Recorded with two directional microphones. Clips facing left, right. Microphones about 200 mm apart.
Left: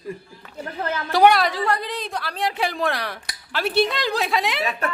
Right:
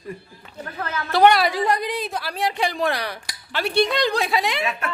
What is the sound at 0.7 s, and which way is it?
Speech, 30° left (ahead or behind).